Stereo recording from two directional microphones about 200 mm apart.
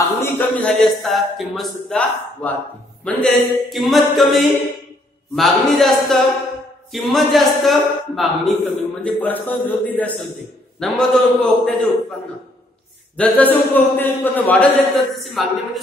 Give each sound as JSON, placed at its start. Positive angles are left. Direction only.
{"t": 0.2, "sound": "a man's voice", "side_deg": 10}
{"t": 10.8, "sound": "a man's voice", "side_deg": 0}
{"t": 13.1, "sound": "a man's voice", "side_deg": 5}